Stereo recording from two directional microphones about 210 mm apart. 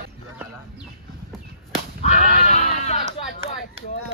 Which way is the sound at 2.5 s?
35° left (ahead or behind).